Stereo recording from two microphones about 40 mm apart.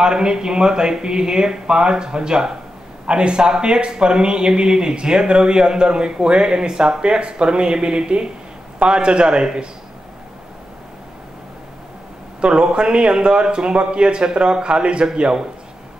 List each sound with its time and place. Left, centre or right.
0.0 s speech: centre
12.4 s speech: right